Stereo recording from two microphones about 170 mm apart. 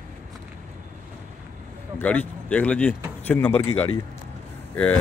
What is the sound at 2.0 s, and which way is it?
Speech, 10° left (ahead or behind).